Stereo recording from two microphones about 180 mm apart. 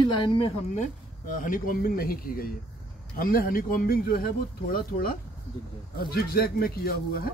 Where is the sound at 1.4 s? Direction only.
50° left (ahead or behind).